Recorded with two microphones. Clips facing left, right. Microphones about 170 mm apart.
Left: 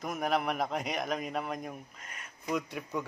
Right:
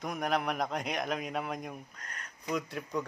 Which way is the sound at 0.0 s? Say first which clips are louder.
Left 1 dB; centre (ahead or behind).